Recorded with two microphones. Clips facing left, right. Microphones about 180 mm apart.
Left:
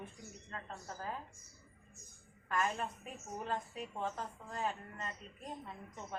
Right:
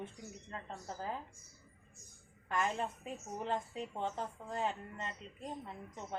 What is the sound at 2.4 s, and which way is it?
A woman's voice, 20° right (ahead or behind).